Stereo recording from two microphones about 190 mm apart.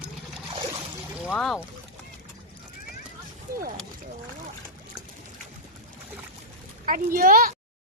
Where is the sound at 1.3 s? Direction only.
Centre (ahead or behind).